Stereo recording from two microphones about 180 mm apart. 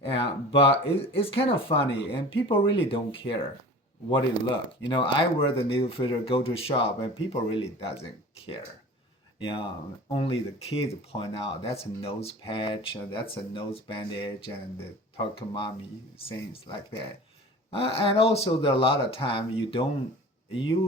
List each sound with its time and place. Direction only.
0.2 s speech: 30° left (ahead or behind)